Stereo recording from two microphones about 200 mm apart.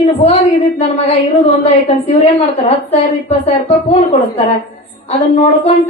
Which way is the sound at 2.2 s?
30° left (ahead or behind).